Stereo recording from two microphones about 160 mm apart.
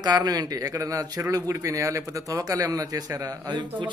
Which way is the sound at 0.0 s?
25° right (ahead or behind).